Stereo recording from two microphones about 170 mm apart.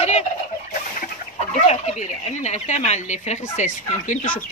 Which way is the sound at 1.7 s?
40° left (ahead or behind).